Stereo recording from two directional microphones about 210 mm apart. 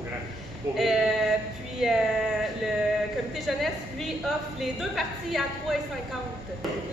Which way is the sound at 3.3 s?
Centre (ahead or behind).